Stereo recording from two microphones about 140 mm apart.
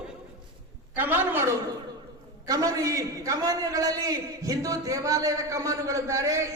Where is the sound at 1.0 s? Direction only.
15° right (ahead or behind).